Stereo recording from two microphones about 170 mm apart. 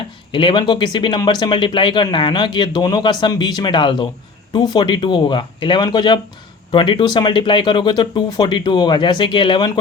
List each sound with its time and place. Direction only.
0.3 s speech: 30° left (ahead or behind)